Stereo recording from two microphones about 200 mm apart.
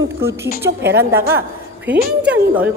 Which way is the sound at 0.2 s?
15° right (ahead or behind).